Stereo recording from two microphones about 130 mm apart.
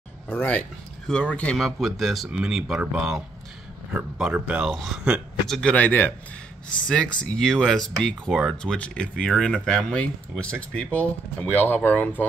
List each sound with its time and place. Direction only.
0.3 s speech: 15° left (ahead or behind); by 5.6 s 5° right (ahead or behind)
5.6 s speech: 10° left (ahead or behind)